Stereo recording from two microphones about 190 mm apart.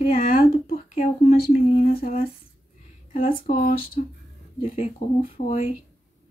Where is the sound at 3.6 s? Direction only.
50° left (ahead or behind).